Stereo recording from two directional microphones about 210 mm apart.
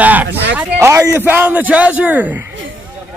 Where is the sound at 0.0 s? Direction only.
10° right (ahead or behind).